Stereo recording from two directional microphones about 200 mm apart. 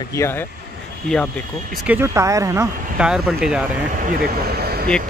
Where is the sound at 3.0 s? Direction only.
5° right (ahead or behind).